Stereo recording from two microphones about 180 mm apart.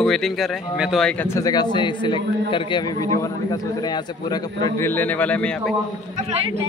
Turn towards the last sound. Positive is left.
turn(degrees=5)  # may be behind; listen again after turning